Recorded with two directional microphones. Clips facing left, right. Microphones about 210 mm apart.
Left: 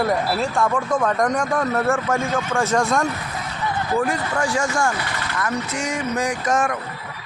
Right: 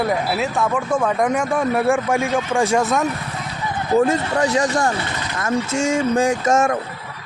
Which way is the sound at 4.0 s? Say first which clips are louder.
Right 5 dB; 25° right (ahead or behind).